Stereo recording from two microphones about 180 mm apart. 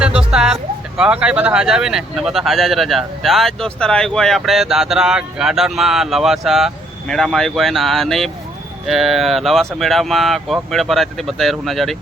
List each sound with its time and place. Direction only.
0.0 s speech: 5° right (ahead or behind)